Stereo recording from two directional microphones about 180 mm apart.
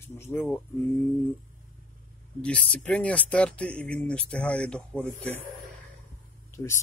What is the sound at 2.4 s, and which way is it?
Speech, 5° left (ahead or behind).